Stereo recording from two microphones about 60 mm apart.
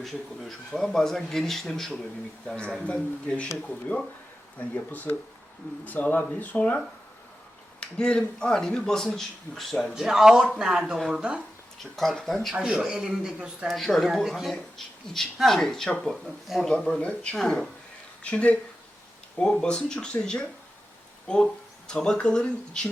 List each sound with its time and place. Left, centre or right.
0.0 s speech: centre
2.8 s speech: centre
7.8 s speech: centre
9.9 s speech: centre
11.9 s speech: centre
12.5 s speech: centre
13.7 s speech: centre
16.2 s speech: centre
18.2 s speech: left